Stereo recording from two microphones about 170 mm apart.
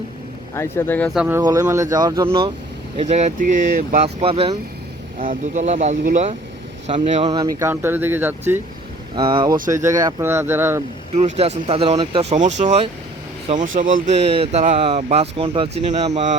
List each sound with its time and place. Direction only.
0.5 s speech: 15° left (ahead or behind)
1.1 s speech: 5° right (ahead or behind)
1.4 s speech: 20° right (ahead or behind)
3.0 s speech: 40° right (ahead or behind)
4.0 s speech: 35° right (ahead or behind)
5.2 s speech: 50° right (ahead or behind)
7.3 s speech: 20° right (ahead or behind)
9.1 s speech: 30° right (ahead or behind)
9.6 s speech: 50° right (ahead or behind)
9.8 s speech: 20° right (ahead or behind)
11.1 s speech: 40° right (ahead or behind)
15.8 s speech: 45° right (ahead or behind)